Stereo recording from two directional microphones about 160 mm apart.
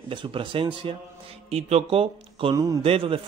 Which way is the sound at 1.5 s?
45° right (ahead or behind).